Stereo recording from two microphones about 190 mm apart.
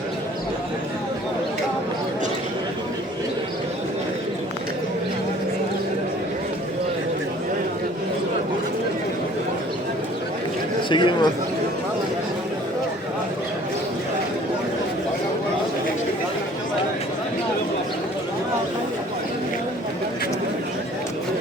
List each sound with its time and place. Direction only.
10.8 s a man's voice: 25° left (ahead or behind)